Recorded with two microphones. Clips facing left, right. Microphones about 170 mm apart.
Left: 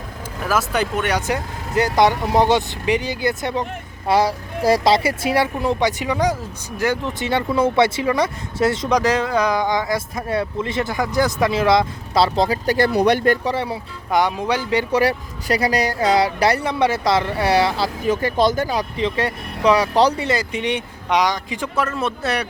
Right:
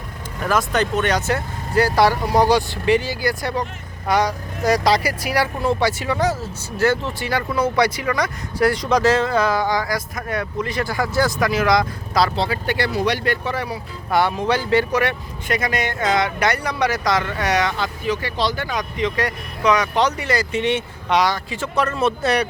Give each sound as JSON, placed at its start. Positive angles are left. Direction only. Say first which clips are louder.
{"t": 0.4, "sound": "speech", "louder": "right 1 dB", "side_deg": 5}
{"t": 12.4, "sound": "speech", "louder": "left 4 dB", "side_deg": 40}
{"t": 14.1, "sound": "speech", "louder": "even", "side_deg": 15}
{"t": 14.9, "sound": "speech", "louder": "left 3 dB", "side_deg": 35}
{"t": 18.1, "sound": "speech", "louder": "left 6 dB", "side_deg": 45}
{"t": 20.2, "sound": "speech", "louder": "right 1 dB", "side_deg": 20}
{"t": 21.8, "sound": "speech", "louder": "right 3 dB", "side_deg": 0}